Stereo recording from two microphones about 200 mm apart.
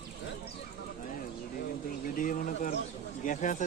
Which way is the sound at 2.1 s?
40° left (ahead or behind).